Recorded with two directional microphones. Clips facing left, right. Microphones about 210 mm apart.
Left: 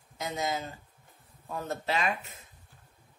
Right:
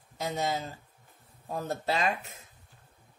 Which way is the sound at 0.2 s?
35° right (ahead or behind).